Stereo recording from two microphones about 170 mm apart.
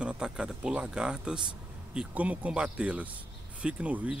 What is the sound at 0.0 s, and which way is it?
Speech, 5° right (ahead or behind).